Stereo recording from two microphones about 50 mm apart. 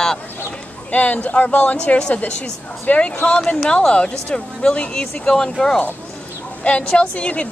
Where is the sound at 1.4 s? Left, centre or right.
Left.